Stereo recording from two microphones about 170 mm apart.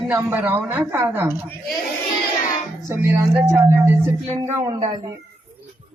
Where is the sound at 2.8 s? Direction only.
15° right (ahead or behind).